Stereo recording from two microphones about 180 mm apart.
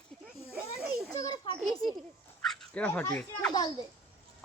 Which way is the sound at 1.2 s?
20° left (ahead or behind).